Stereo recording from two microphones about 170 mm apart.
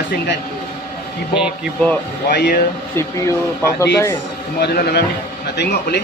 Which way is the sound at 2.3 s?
60° left (ahead or behind).